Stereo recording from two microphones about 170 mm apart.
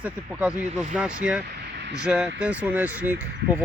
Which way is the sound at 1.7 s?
90° right.